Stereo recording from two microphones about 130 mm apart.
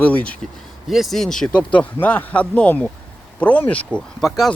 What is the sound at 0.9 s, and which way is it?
Speech, centre (ahead or behind).